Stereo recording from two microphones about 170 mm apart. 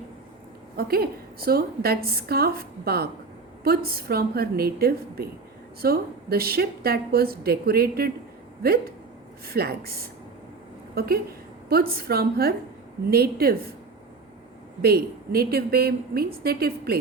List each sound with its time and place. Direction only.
0.8 s a woman's voice: 65° right (ahead or behind)
9.5 s a woman's voice: 65° right (ahead or behind)
14.8 s a woman's voice: 65° right (ahead or behind)